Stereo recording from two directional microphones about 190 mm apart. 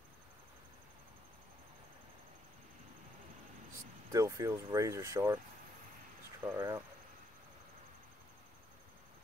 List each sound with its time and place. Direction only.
4.1 s speech: 15° right (ahead or behind)
6.4 s speech: 15° right (ahead or behind)